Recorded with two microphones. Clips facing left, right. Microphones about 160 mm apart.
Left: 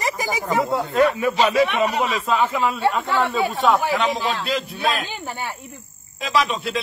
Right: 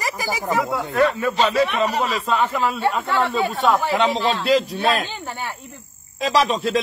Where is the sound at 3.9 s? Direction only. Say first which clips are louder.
Right 2 dB; 35° right (ahead or behind).